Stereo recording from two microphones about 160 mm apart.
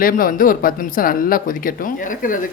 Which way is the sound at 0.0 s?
60° left (ahead or behind).